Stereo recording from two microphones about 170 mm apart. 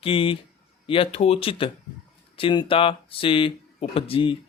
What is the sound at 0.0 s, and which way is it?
Speech, 35° left (ahead or behind).